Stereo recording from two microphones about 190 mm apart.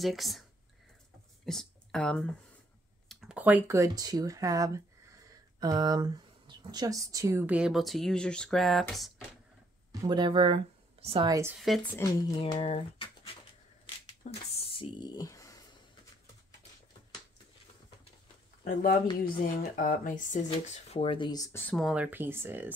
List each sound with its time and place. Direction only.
0.0 s speech: centre (ahead or behind)
1.4 s a sound: centre (ahead or behind)
3.1 s speech: centre (ahead or behind)
10.0 s speech: 25° right (ahead or behind)
11.2 s speech: 15° right (ahead or behind)
11.5 s speech: centre (ahead or behind)
12.4 s speech: 30° left (ahead or behind)
14.2 s speech: 40° left (ahead or behind)
14.6 s a sound: 25° left (ahead or behind)
18.6 s speech: 50° left (ahead or behind)
20.4 s speech: 30° left (ahead or behind); by 21.7 s 10° left (ahead or behind)
21.7 s speech: 5° right (ahead or behind)